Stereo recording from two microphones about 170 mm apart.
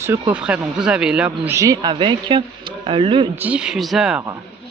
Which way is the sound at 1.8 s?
30° right (ahead or behind).